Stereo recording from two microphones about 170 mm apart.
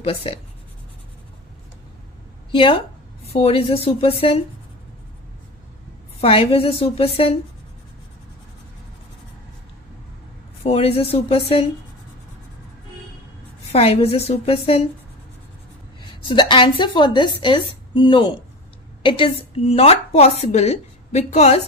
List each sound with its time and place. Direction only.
0.0 s a woman's voice: 35° left (ahead or behind)
2.5 s a woman's voice: 30° left (ahead or behind)
6.2 s a woman's voice: 35° left (ahead or behind)
10.6 s a woman's voice: 35° left (ahead or behind)
13.7 s a woman's voice: 35° left (ahead or behind)
16.0 s a woman's voice: 30° left (ahead or behind)